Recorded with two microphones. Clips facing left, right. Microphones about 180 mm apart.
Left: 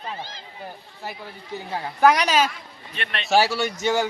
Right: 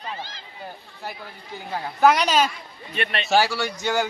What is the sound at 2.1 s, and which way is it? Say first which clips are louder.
A man's voice: even; 10° left (ahead or behind).